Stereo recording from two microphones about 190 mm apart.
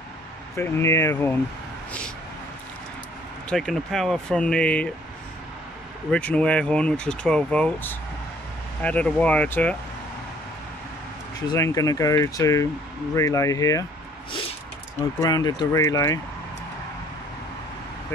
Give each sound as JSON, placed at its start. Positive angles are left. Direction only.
{"t": 0.6, "sound": "speech", "side_deg": 15}
{"t": 1.9, "sound": "vehicle", "side_deg": 5}
{"t": 3.4, "sound": "speech", "side_deg": 0}
{"t": 6.1, "sound": "speech", "side_deg": 5}
{"t": 11.4, "sound": "speech", "side_deg": 20}
{"t": 15.0, "sound": "speech", "side_deg": 20}